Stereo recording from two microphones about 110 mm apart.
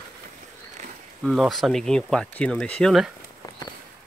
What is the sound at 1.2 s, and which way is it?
Speech, centre (ahead or behind).